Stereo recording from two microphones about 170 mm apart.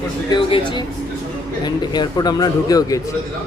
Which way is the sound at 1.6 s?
25° left (ahead or behind).